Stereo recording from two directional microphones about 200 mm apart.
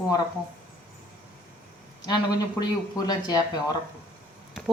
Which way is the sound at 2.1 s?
20° left (ahead or behind).